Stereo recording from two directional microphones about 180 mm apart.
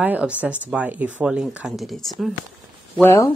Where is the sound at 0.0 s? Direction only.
10° right (ahead or behind).